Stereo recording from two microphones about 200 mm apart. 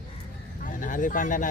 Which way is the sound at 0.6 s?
40° left (ahead or behind).